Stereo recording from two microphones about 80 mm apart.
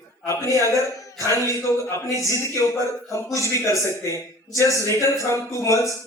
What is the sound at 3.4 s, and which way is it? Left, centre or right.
A man's voice, left.